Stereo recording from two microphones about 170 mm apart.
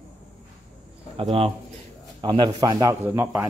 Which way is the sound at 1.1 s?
35° right (ahead or behind).